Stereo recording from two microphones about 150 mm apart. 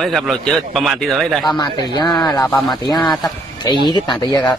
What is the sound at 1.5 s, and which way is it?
Speech, 30° left (ahead or behind).